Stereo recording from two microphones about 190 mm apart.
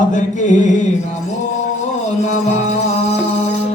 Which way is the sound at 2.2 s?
35° left (ahead or behind).